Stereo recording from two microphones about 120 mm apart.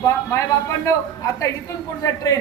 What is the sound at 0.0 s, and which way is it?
Speech, 25° left (ahead or behind).